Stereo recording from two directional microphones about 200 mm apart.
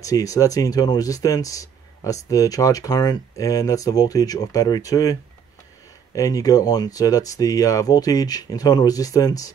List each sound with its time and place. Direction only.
0.0 s speech: 15° left (ahead or behind)
6.1 s speech: 20° left (ahead or behind)